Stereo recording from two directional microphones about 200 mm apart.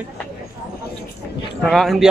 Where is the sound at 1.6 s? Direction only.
Centre (ahead or behind).